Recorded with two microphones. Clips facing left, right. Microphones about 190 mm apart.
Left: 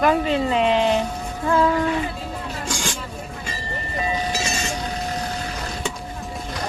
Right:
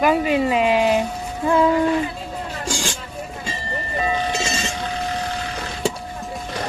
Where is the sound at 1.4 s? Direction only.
20° right (ahead or behind).